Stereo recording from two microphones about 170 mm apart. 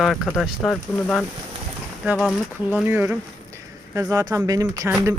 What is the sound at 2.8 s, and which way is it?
Speech, 15° right (ahead or behind).